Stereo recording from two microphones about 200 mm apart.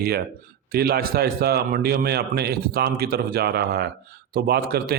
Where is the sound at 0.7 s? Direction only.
50° right (ahead or behind).